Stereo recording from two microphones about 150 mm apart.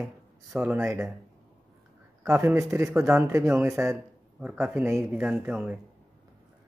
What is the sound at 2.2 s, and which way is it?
A man's voice, 20° right (ahead or behind).